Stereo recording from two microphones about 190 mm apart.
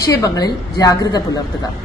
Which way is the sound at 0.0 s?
15° left (ahead or behind).